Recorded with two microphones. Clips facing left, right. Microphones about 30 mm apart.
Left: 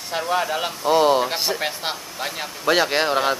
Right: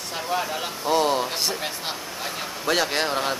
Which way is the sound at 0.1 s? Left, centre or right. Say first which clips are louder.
Left 5 dB; centre.